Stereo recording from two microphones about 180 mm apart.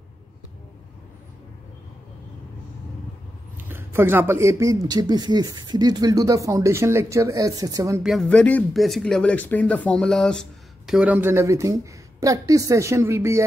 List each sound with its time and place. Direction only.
3.5 s speech: 10° right (ahead or behind)
8.0 s speech: centre (ahead or behind)
10.9 s speech: 5° right (ahead or behind)